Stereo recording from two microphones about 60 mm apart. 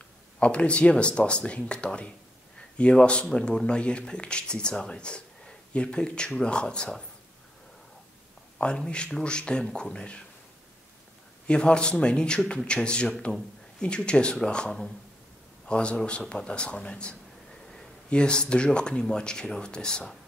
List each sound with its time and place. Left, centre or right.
0.4 s speech: centre
8.5 s speech: centre
11.4 s speech: centre